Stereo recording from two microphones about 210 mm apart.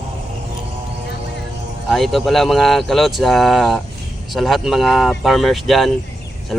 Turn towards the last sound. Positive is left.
turn(degrees=0)  # may be behind; listen again after turning